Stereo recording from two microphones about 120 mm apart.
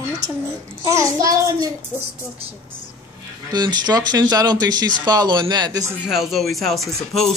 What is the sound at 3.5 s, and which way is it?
Speech, 35° right (ahead or behind).